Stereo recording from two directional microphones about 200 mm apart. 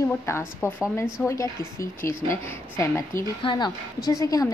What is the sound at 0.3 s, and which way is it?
A woman's voice, 10° left (ahead or behind).